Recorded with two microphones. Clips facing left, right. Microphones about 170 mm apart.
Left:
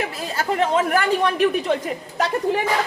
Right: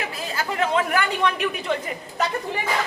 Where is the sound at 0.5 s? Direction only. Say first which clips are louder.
Left 3 dB; 40° left (ahead or behind).